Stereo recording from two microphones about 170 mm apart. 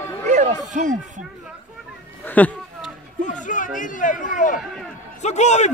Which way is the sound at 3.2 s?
50° left (ahead or behind).